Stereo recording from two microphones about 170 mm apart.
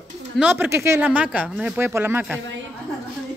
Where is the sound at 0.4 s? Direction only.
10° right (ahead or behind).